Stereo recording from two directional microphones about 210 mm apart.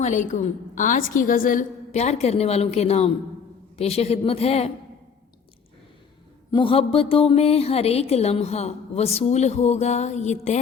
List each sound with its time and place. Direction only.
0.0 s a woman's voice: 35° left (ahead or behind)
6.5 s speech: 25° left (ahead or behind)